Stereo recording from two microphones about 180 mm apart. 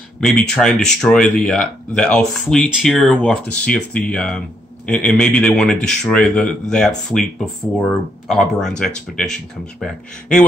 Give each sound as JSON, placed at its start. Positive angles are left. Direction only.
{"t": 0.2, "sound": "speech", "side_deg": 5}